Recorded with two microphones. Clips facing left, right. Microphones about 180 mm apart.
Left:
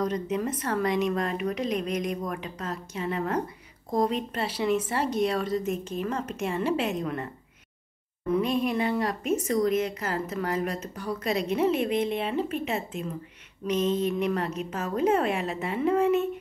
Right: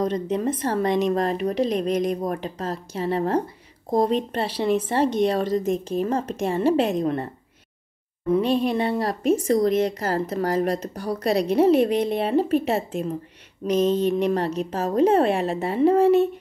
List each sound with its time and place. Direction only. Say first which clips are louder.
0.0 s a woman's voice: right 4 dB; 30° right (ahead or behind)
8.4 s a woman's voice: right 4 dB; 30° right (ahead or behind)